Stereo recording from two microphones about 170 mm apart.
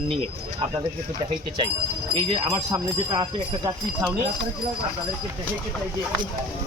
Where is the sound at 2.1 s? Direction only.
35° right (ahead or behind).